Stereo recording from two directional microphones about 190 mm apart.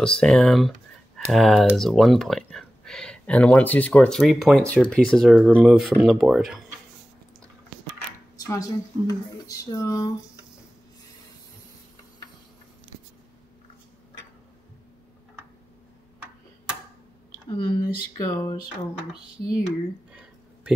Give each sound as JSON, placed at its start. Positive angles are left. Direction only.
{"t": 0.0, "sound": "speech", "side_deg": 5}
{"t": 8.4, "sound": "speech", "side_deg": 15}
{"t": 17.5, "sound": "speech", "side_deg": 20}